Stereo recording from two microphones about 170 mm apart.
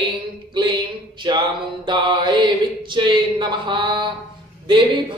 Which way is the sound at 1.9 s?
30° right (ahead or behind).